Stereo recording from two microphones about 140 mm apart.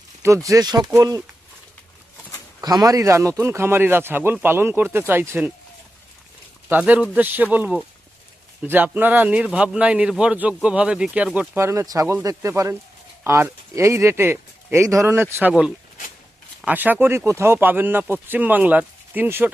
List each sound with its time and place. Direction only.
0.4 s speech: 25° right (ahead or behind)
2.6 s a man's voice: 25° right (ahead or behind)
6.7 s a man's voice: 10° right (ahead or behind)
11.6 s speech: 20° right (ahead or behind)
16.6 s a man's voice: 10° right (ahead or behind)